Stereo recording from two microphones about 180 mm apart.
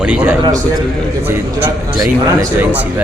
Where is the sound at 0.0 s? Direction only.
5° right (ahead or behind).